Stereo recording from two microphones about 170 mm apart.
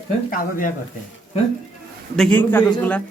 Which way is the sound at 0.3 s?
55° left (ahead or behind).